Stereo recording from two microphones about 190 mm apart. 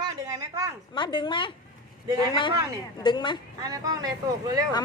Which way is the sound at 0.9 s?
25° left (ahead or behind).